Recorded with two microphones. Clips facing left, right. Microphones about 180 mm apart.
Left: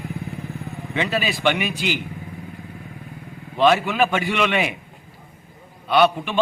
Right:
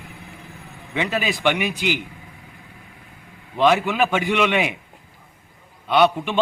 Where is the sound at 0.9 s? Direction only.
15° right (ahead or behind).